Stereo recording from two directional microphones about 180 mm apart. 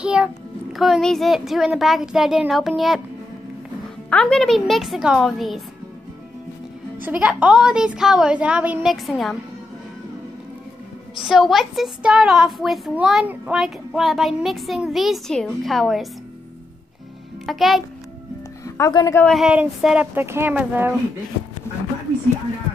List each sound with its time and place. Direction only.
0.0 s a child's voice: 5° right (ahead or behind)
4.1 s a child's voice: 5° left (ahead or behind)
7.0 s a child's voice: 10° right (ahead or behind)
11.2 s a child's voice: centre (ahead or behind)
17.5 s a child's voice: centre (ahead or behind)
18.6 s speech: 20° left (ahead or behind)
19.2 s speech: centre (ahead or behind)